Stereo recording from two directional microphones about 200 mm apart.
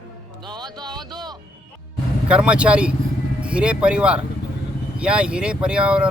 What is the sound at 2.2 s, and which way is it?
Speech, 5° right (ahead or behind).